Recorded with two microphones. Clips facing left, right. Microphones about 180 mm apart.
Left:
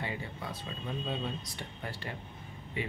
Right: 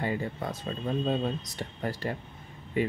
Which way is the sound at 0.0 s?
45° right (ahead or behind).